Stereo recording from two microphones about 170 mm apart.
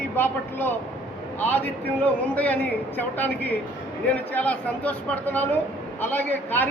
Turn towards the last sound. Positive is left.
turn(degrees=10)  # may be behind; listen again after turning